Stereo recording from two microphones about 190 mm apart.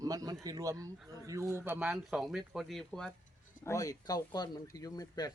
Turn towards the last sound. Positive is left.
turn(degrees=20)  # may be behind; listen again after turning